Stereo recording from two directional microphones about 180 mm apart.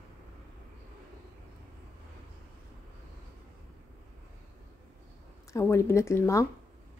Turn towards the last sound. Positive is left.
turn(degrees=15)  # may be behind; listen again after turning